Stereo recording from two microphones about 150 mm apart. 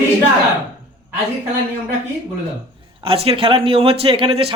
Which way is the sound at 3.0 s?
40° right (ahead or behind).